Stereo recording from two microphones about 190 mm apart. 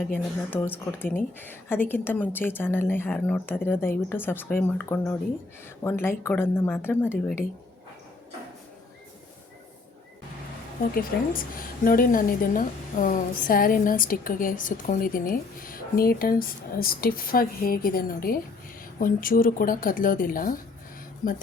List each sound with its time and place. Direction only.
0.0 s speech: 10° left (ahead or behind)
11.9 s a woman's voice: 50° left (ahead or behind)